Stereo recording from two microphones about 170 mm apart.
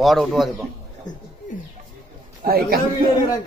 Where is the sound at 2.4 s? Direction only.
60° right (ahead or behind).